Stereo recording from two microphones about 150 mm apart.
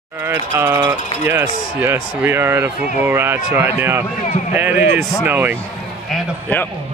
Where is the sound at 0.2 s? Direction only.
15° right (ahead or behind).